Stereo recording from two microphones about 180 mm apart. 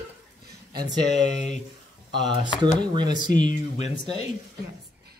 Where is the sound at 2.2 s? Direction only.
25° right (ahead or behind).